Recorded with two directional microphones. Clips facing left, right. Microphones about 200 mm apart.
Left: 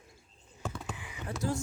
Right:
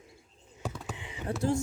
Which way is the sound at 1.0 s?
25° right (ahead or behind).